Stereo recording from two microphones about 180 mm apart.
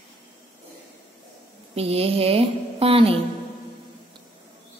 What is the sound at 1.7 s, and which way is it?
A woman's voice, 35° right (ahead or behind).